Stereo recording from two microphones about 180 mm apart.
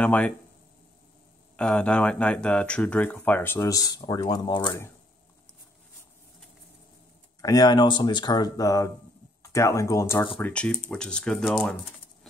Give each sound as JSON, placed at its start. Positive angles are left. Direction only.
{"t": 0.0, "sound": "speech", "side_deg": 5}
{"t": 1.6, "sound": "speech", "side_deg": 5}
{"t": 7.4, "sound": "speech", "side_deg": 20}